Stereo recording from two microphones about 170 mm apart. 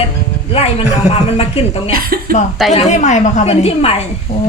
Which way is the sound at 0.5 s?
35° left (ahead or behind).